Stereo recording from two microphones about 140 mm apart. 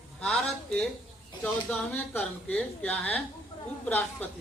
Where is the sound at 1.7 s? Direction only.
10° left (ahead or behind).